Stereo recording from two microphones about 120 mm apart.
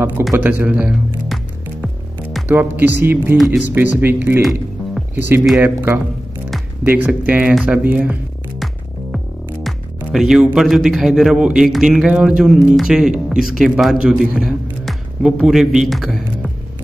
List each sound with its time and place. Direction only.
0.3 s speech: 15° right (ahead or behind)
2.4 s speech: 15° right (ahead or behind)
4.4 s music: centre (ahead or behind)
5.1 s a man's voice: 15° right (ahead or behind)
9.1 s music: centre (ahead or behind)
10.5 s a man's voice: 5° right (ahead or behind)